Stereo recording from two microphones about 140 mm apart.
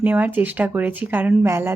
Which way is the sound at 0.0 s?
15° right (ahead or behind).